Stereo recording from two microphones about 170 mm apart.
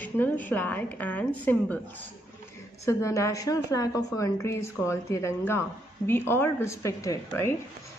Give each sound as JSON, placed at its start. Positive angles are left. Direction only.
{"t": 0.0, "sound": "a woman's voice", "side_deg": 10}
{"t": 2.8, "sound": "a woman's voice", "side_deg": 20}